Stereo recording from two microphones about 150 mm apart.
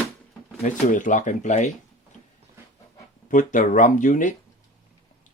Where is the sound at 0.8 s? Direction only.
60° left (ahead or behind).